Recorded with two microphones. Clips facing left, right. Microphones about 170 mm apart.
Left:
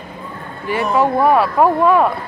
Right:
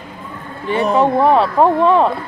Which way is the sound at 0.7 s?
25° right (ahead or behind).